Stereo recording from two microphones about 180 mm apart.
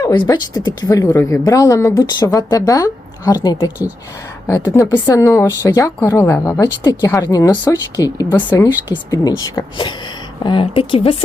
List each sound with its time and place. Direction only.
0.0 s a woman's voice: 20° left (ahead or behind)